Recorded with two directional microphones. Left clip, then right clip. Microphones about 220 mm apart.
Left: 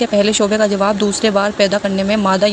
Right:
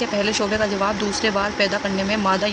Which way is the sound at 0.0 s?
25° left (ahead or behind).